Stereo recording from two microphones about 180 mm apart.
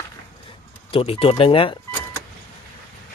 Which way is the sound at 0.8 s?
30° left (ahead or behind).